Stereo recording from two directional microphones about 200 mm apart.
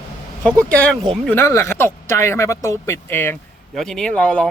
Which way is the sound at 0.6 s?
5° left (ahead or behind).